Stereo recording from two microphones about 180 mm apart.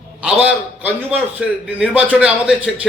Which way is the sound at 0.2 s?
5° right (ahead or behind).